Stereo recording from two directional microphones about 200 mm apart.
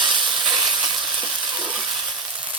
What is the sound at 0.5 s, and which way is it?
Sizzle, centre (ahead or behind).